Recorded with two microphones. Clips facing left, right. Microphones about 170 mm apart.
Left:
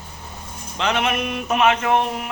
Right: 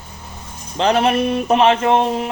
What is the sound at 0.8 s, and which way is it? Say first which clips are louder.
Speech: right 7 dB; 35° right (ahead or behind).